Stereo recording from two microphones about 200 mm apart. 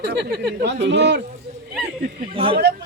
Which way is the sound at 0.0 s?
55° right (ahead or behind).